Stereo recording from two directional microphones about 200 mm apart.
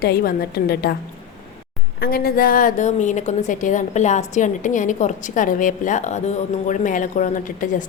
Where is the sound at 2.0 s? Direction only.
50° left (ahead or behind).